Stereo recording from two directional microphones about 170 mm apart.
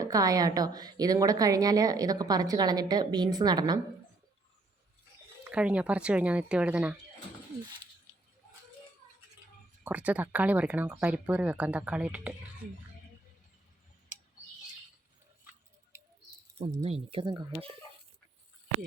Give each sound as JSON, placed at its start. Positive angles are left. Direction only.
{"t": 0.0, "sound": "a woman's voice", "side_deg": -20}
{"t": 5.5, "sound": "speech", "side_deg": -5}
{"t": 9.8, "sound": "speech", "side_deg": -10}
{"t": 16.8, "sound": "speech", "side_deg": -35}